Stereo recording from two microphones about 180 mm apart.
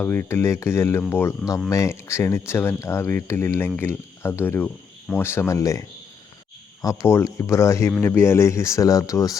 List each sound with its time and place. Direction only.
0.0 s speech: 10° left (ahead or behind)
6.8 s speech: 15° left (ahead or behind)